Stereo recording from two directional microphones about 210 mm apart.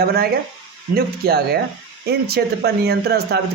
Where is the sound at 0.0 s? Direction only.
45° right (ahead or behind).